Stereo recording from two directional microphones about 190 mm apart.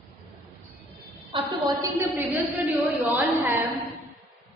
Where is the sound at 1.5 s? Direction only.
20° right (ahead or behind).